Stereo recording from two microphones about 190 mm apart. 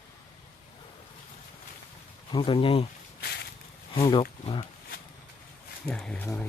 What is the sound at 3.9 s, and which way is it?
Speech, 25° left (ahead or behind).